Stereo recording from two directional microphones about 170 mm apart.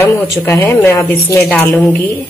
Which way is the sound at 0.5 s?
15° left (ahead or behind).